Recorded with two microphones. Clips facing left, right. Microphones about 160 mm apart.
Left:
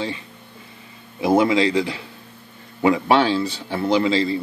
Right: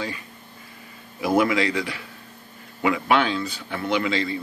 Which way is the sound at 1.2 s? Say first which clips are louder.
Left 4 dB; 25° left (ahead or behind).